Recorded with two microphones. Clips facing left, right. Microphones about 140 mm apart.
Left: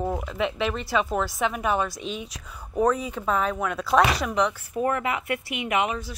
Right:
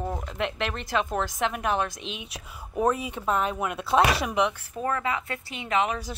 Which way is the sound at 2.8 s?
5° right (ahead or behind).